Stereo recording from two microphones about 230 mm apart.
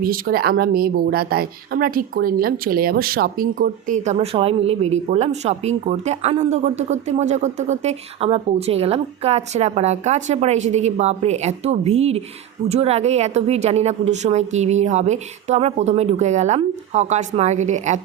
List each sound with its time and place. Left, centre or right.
0.0 s a woman's voice: right